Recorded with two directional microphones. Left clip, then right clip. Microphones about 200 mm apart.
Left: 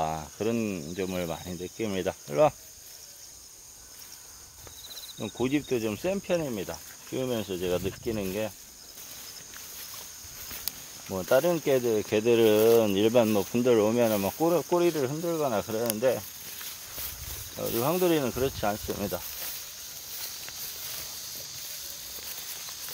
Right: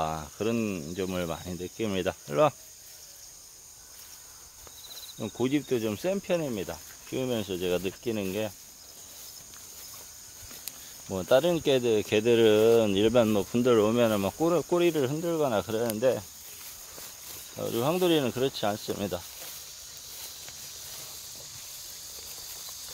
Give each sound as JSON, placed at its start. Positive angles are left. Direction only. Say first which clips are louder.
{"t": 0.0, "sound": "speech", "louder": "left 1 dB", "side_deg": -20}
{"t": 5.2, "sound": "speech", "louder": "even", "side_deg": -25}
{"t": 11.1, "sound": "cricket", "louder": "right 1 dB", "side_deg": -35}
{"t": 17.6, "sound": "speech", "louder": "even", "side_deg": -25}